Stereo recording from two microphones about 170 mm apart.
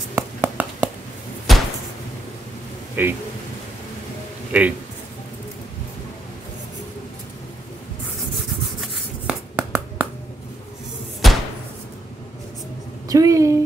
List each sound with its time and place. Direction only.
0.1 s a sound: 10° right (ahead or behind)
3.0 s speech: 10° right (ahead or behind)
4.5 s a man's voice: 10° right (ahead or behind)
9.3 s finger snapping: 10° right (ahead or behind)
11.2 s slam: centre (ahead or behind)
13.1 s a sound: 20° right (ahead or behind)